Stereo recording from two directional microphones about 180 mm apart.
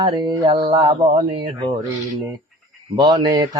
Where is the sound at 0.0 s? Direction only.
25° right (ahead or behind).